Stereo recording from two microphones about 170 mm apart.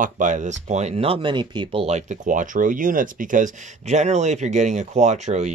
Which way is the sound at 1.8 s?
45° right (ahead or behind).